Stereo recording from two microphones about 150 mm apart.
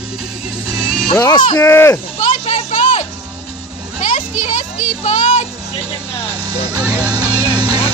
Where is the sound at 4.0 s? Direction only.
55° left (ahead or behind).